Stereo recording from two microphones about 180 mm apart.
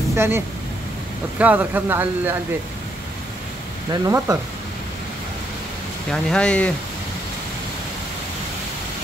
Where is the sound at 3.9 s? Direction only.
15° right (ahead or behind).